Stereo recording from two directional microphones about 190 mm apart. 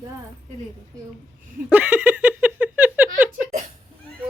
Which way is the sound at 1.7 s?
10° right (ahead or behind).